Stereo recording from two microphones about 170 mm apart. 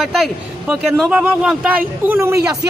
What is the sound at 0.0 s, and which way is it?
A man's voice, centre (ahead or behind).